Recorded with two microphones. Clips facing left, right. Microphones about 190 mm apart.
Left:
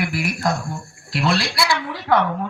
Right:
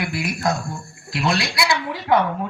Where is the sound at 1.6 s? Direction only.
25° right (ahead or behind).